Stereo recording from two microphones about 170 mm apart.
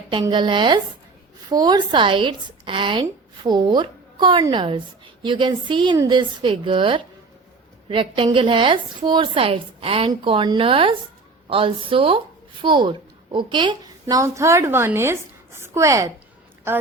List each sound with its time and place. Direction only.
0.1 s a woman's voice: 30° right (ahead or behind)